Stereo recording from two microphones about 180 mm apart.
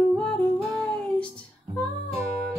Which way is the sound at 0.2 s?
5° left (ahead or behind).